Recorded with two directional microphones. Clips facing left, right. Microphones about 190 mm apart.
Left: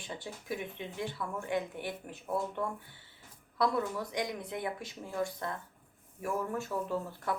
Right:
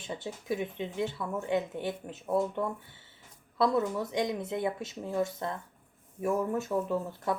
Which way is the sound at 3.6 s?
25° right (ahead or behind).